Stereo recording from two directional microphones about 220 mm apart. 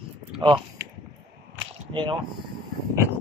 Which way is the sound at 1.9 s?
20° right (ahead or behind).